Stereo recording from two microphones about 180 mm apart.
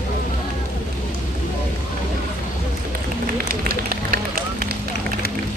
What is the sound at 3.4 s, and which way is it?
Run, 55° right (ahead or behind).